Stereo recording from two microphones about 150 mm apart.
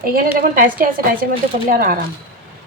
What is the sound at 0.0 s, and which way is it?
A woman's voice, 70° right (ahead or behind).